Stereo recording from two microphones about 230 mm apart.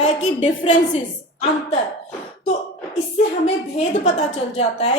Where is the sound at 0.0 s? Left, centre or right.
Left.